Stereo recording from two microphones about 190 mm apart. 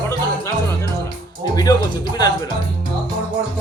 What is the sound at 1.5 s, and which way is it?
Speech, 20° left (ahead or behind).